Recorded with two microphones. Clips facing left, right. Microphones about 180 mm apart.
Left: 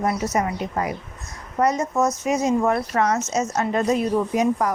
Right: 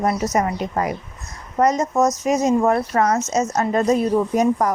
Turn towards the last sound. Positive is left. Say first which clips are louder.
# right 3 dB
turn(degrees=-45)  # may be behind; listen again after turning